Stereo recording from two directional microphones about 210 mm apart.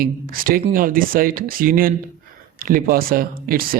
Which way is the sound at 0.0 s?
45° right (ahead or behind).